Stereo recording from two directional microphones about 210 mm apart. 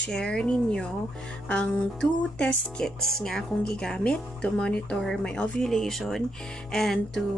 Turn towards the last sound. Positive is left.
turn(degrees=0)  # may be behind; listen again after turning